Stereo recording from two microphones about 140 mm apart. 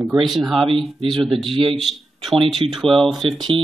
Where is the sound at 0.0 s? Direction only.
Centre (ahead or behind).